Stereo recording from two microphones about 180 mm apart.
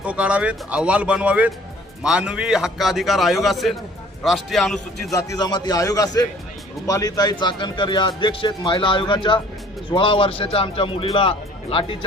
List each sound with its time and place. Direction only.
0.0 s a man's voice: 5° right (ahead or behind)
5.1 s speech: 20° left (ahead or behind)